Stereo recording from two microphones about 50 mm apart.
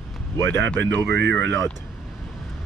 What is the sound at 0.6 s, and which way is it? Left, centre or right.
Speech, left.